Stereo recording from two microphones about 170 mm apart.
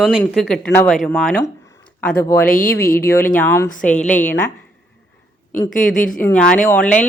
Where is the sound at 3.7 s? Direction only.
50° left (ahead or behind).